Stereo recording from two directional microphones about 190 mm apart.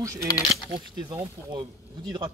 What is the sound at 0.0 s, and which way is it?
Speech, 15° right (ahead or behind).